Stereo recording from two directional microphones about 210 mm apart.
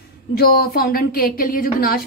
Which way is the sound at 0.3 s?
45° left (ahead or behind).